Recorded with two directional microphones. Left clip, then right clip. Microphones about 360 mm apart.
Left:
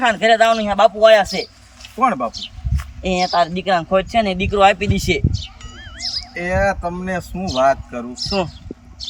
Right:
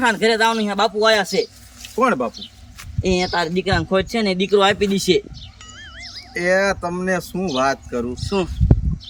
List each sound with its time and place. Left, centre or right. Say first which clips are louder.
0.0 s a man's voice: left 3 dB; centre
6.0 s cat: left 12 dB; left
6.3 s a man's voice: right 2 dB; centre